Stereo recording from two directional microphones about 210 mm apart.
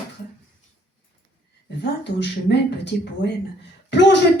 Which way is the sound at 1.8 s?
55° left (ahead or behind).